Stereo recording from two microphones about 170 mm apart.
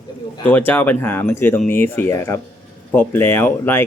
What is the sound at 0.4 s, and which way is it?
Speech, 10° left (ahead or behind).